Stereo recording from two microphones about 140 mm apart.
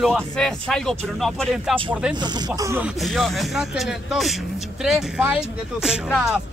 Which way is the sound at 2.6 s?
20° right (ahead or behind).